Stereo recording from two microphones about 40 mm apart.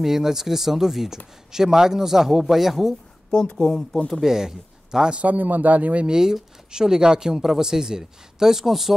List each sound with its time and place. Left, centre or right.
0.0 s speech: centre
3.3 s speech: left
3.9 s speech: centre
4.3 s a man's voice: centre
5.2 s speech: right
6.0 s speech: centre